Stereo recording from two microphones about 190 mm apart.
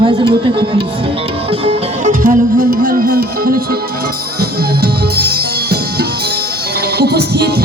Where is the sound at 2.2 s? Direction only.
50° right (ahead or behind).